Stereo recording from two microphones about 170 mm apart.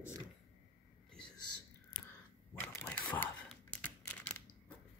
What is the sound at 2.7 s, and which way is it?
Crumpling, 10° left (ahead or behind).